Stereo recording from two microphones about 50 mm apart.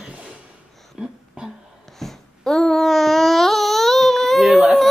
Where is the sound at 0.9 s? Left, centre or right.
Centre.